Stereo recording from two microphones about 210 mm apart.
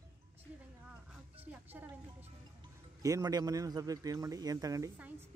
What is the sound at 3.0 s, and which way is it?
Speech, 15° right (ahead or behind).